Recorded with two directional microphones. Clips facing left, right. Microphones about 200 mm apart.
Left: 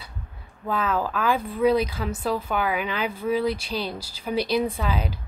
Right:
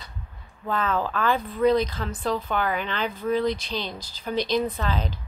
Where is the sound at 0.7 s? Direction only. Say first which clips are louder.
Left 1 dB; 10° left (ahead or behind).